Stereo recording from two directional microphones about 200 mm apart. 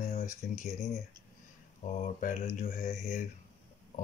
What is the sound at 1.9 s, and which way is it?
Mantra, 40° left (ahead or behind).